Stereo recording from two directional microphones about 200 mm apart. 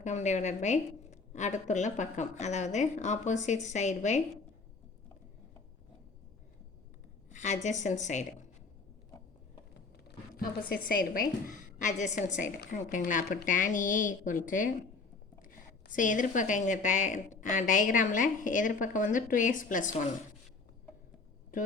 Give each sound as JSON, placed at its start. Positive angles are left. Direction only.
{"t": 0.0, "sound": "speech", "side_deg": 35}
{"t": 7.3, "sound": "a woman's voice", "side_deg": 35}
{"t": 10.7, "sound": "speech", "side_deg": 45}